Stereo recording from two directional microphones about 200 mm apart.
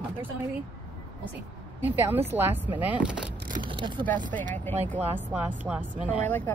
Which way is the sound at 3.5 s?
25° right (ahead or behind).